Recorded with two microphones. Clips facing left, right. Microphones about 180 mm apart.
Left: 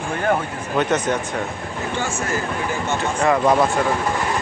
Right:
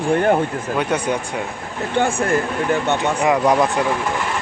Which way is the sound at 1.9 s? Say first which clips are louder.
Right 8 dB; 60° right (ahead or behind).